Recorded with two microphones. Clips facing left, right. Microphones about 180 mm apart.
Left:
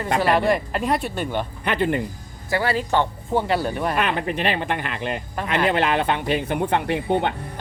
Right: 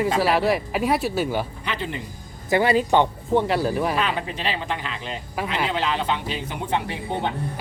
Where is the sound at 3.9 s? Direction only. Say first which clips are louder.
Left 2 dB; 60° left (ahead or behind).